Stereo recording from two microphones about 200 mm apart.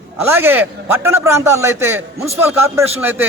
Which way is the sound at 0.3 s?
10° right (ahead or behind).